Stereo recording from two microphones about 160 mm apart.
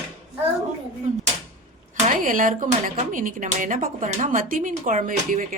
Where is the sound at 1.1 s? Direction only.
50° right (ahead or behind).